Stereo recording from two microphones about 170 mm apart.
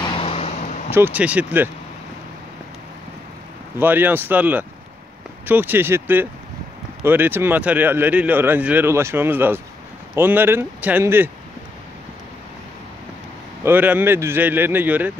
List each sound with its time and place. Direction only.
0.0 s vehicle: 35° left (ahead or behind)
0.9 s speech: 10° right (ahead or behind)
3.7 s speech: 10° right (ahead or behind)
13.7 s speech: 10° right (ahead or behind)